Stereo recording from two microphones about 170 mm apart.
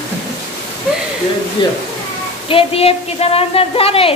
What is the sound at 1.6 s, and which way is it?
A woman's voice, 25° left (ahead or behind).